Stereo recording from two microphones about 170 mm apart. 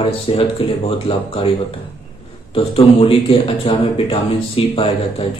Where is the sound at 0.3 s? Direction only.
35° left (ahead or behind).